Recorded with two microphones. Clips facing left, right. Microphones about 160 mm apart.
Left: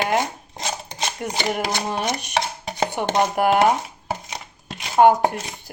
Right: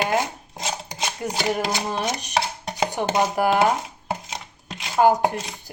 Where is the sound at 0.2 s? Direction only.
5° right (ahead or behind).